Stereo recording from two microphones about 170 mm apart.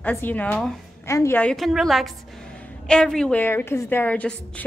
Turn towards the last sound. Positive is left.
turn(degrees=10)  # may be behind; listen again after turning